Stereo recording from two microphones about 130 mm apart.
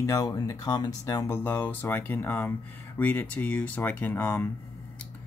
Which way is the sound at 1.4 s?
15° left (ahead or behind).